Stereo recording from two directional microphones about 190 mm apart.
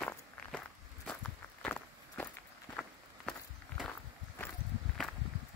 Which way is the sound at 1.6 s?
5° left (ahead or behind).